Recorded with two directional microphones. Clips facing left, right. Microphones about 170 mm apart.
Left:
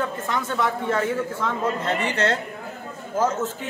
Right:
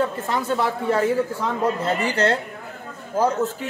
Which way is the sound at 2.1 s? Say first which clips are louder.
Right 4 dB; 30° right (ahead or behind).